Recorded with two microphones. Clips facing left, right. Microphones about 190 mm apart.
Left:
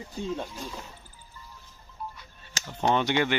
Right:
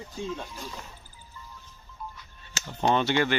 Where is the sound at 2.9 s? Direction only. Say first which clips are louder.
Even; 15° left (ahead or behind).